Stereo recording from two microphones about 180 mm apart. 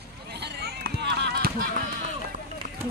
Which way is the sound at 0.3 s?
65° right (ahead or behind).